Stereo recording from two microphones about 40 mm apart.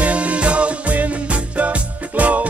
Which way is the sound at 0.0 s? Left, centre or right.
Right.